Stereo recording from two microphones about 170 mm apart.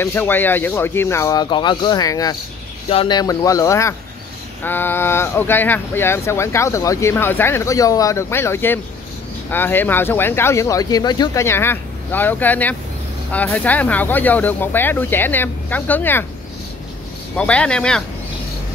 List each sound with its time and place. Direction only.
0.0 s speech: 10° left (ahead or behind)
17.4 s speech: 5° left (ahead or behind)